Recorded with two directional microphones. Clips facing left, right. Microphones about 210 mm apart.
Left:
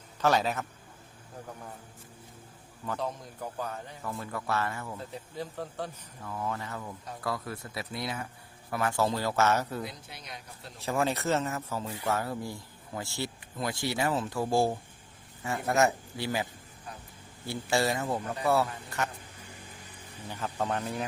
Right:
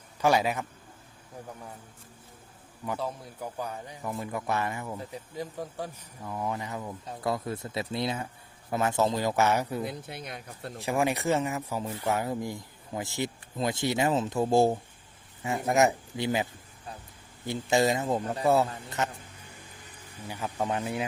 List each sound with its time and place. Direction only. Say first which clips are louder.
0.2 s speech: right 2 dB; 10° right (ahead or behind)
2.8 s speech: right 1 dB; 10° right (ahead or behind)
9.8 s speech: right 6 dB; 55° right (ahead or behind)
10.8 s speech: right 2 dB; 15° right (ahead or behind)
20.2 s speech: right 1 dB; 10° right (ahead or behind)